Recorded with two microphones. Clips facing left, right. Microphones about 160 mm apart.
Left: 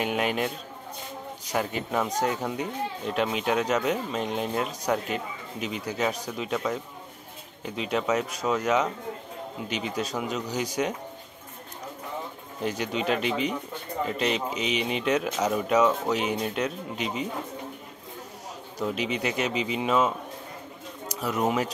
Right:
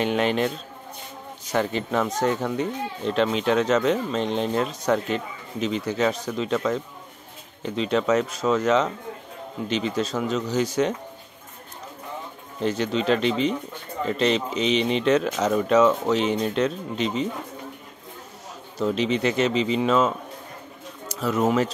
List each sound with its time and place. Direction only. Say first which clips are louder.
0.0 s speech: right 4 dB; 10° left (ahead or behind)
1.5 s speech: right 4 dB; 10° left (ahead or behind)
12.6 s speech: right 5 dB; 10° left (ahead or behind)
18.8 s speech: right 6 dB; 10° left (ahead or behind)
21.1 s speech: right 4 dB; 15° left (ahead or behind)